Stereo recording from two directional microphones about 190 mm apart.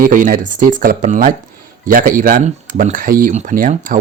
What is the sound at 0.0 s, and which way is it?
Speech, 45° right (ahead or behind).